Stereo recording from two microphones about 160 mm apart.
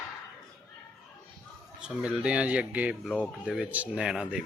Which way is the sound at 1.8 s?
5° right (ahead or behind).